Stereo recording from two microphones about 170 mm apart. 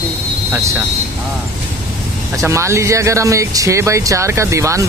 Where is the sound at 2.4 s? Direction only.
15° right (ahead or behind).